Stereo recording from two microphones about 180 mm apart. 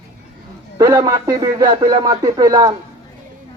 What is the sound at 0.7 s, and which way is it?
Speech, 20° right (ahead or behind).